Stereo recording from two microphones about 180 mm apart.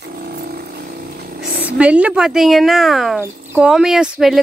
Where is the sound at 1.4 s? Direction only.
5° right (ahead or behind).